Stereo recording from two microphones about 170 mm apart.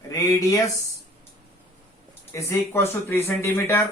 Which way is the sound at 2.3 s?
15° left (ahead or behind).